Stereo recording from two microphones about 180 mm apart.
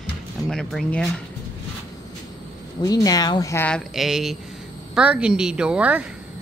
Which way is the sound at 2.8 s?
20° left (ahead or behind).